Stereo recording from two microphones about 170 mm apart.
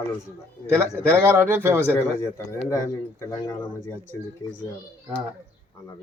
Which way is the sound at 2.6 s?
20° left (ahead or behind).